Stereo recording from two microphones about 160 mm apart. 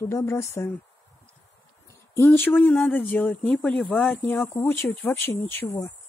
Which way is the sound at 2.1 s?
15° left (ahead or behind).